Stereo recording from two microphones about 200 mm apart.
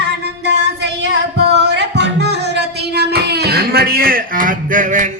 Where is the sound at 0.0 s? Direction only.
60° right (ahead or behind).